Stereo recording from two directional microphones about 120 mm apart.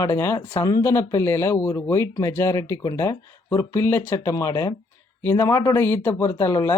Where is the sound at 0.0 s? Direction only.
25° left (ahead or behind).